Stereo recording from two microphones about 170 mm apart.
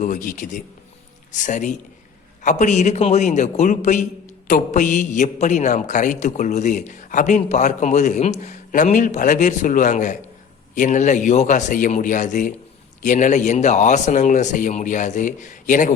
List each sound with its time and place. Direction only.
0.0 s a man's voice: 50° left (ahead or behind)